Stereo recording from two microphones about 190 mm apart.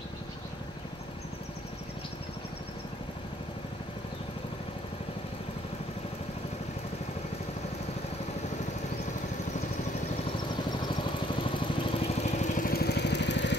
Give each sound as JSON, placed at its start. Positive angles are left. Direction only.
{"t": 10.9, "sound": "vehicle", "side_deg": 25}